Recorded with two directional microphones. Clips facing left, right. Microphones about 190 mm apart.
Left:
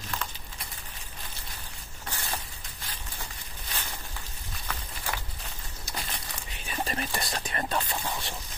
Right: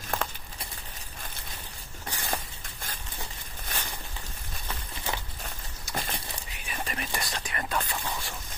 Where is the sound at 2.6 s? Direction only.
50° right (ahead or behind).